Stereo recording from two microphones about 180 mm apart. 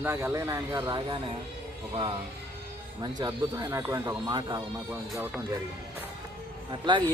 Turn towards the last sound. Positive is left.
turn(degrees=-25)  # may be behind; listen again after turning